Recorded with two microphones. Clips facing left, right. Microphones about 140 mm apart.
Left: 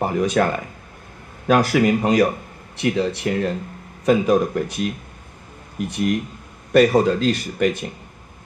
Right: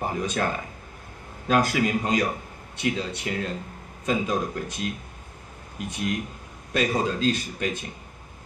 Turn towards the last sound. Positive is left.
turn(degrees=70)  # may be behind; listen again after turning